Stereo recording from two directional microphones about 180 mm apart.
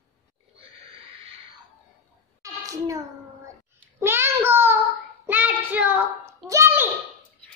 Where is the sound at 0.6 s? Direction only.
30° right (ahead or behind).